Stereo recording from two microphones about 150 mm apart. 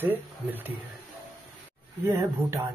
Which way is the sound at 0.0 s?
10° right (ahead or behind).